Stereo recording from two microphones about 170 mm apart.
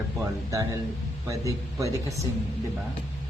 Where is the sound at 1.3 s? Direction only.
20° right (ahead or behind).